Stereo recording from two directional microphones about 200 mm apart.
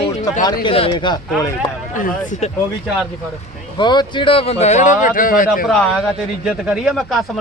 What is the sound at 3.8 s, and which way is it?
Speech, 25° left (ahead or behind).